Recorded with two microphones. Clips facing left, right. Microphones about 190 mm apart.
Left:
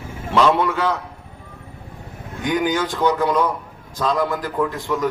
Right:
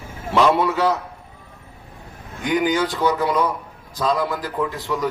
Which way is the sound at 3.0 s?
15° left (ahead or behind).